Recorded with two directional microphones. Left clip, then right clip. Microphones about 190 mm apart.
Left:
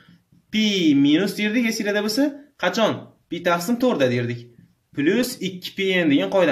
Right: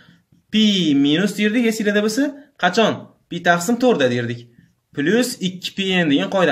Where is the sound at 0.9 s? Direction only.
55° right (ahead or behind).